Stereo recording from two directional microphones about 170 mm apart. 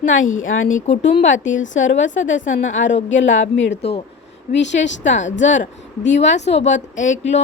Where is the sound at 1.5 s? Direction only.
90° left.